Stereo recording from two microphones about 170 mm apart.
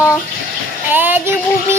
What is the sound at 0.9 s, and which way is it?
Child singing, 10° right (ahead or behind).